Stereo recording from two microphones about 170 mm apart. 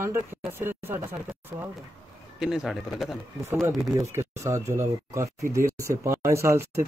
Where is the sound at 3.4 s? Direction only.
15° right (ahead or behind).